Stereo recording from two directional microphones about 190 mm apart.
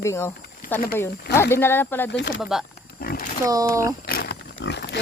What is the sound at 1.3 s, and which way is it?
Speech, 15° left (ahead or behind).